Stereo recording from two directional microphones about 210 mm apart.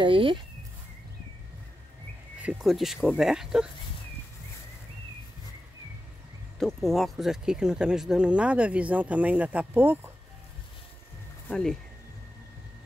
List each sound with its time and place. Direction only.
0.0 s a sound: 25° right (ahead or behind)
2.4 s speech: centre (ahead or behind)
6.6 s speech: centre (ahead or behind)
11.4 s speech: 5° left (ahead or behind)